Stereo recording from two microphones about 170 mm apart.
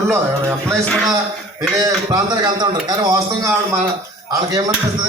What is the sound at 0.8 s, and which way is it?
Speech, 5° left (ahead or behind).